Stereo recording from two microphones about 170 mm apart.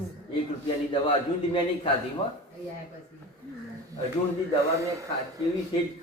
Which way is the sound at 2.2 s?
35° left (ahead or behind).